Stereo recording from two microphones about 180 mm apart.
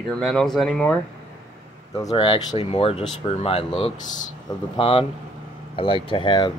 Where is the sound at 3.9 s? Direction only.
45° left (ahead or behind).